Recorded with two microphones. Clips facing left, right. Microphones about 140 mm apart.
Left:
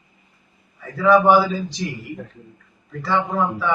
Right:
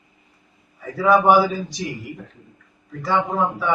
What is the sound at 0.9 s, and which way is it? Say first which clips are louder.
Speech: left 1 dB; 15° right (ahead or behind).